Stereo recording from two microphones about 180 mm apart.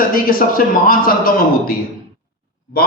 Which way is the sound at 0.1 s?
50° left (ahead or behind).